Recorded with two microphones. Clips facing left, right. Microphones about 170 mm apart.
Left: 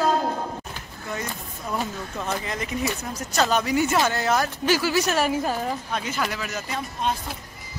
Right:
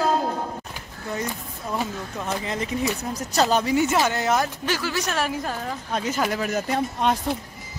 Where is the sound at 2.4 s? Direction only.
30° right (ahead or behind).